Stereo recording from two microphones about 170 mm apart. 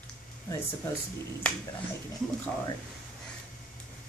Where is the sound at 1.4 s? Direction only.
5° left (ahead or behind).